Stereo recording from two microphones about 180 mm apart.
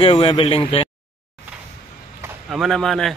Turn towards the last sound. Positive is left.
turn(degrees=0)  # may be behind; listen again after turning